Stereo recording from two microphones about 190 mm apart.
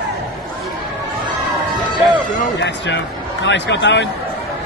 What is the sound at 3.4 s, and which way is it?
Speech, 70° left (ahead or behind).